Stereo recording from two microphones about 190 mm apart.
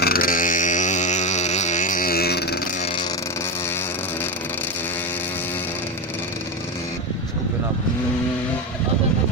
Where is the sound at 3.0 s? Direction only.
15° left (ahead or behind).